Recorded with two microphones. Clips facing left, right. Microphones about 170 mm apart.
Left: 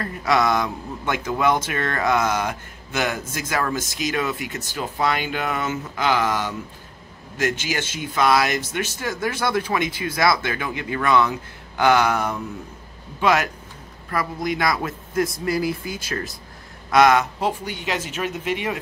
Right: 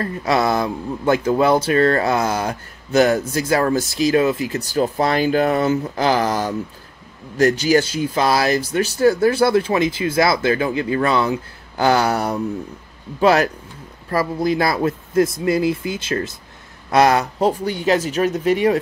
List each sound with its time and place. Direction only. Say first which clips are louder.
0.0 s speech: right 2 dB; 30° right (ahead or behind)